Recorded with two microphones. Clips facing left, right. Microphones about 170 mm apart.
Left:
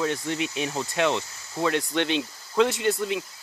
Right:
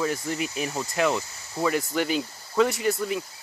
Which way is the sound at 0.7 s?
Centre (ahead or behind).